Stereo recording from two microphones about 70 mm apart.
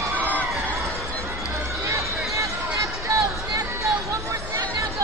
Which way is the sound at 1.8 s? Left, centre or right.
Right.